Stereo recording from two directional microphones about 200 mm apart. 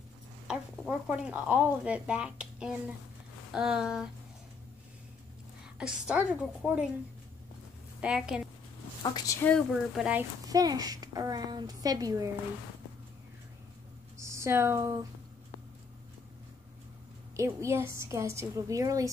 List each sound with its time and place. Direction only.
0.5 s a woman's voice: 5° right (ahead or behind)
5.8 s a woman's voice: 5° right (ahead or behind)
8.0 s a woman's voice: 5° right (ahead or behind)
9.0 s a woman's voice: 20° left (ahead or behind)
9.7 s a woman's voice: centre (ahead or behind)
10.4 s a woman's voice: 20° right (ahead or behind)
14.1 s speech: 15° right (ahead or behind)
17.4 s a woman's voice: 15° right (ahead or behind)